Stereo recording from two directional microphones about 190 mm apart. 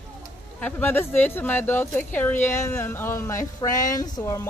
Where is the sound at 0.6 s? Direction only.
10° left (ahead or behind).